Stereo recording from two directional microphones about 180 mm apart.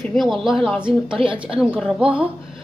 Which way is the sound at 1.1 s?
30° right (ahead or behind).